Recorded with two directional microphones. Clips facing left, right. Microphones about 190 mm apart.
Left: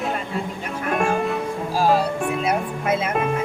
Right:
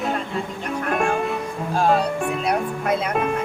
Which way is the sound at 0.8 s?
Centre (ahead or behind).